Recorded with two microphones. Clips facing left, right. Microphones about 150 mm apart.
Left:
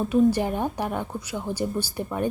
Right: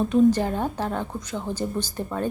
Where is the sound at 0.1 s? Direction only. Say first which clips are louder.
Even; 10° left (ahead or behind).